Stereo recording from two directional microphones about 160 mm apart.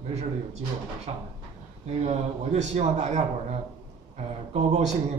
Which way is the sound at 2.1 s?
45° right (ahead or behind).